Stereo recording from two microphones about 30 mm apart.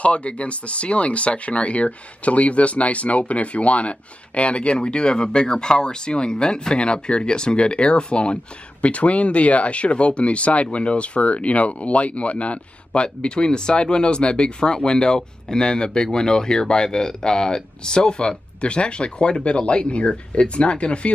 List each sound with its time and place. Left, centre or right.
0.0 s speech: left
4.7 s speech: left
8.8 s speech: left